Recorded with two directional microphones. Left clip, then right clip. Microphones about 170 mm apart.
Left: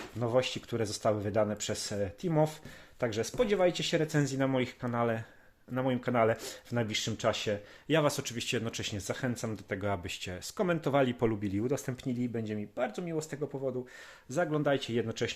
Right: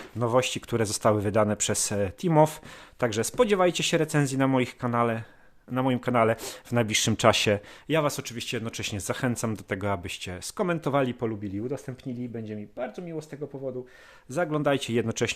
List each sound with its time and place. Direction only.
0.2 s speech: 45° right (ahead or behind); by 7.6 s 65° right (ahead or behind)
7.9 s speech: 20° right (ahead or behind)
8.8 s speech: 35° right (ahead or behind)
11.2 s speech: centre (ahead or behind)
14.3 s speech: 30° right (ahead or behind)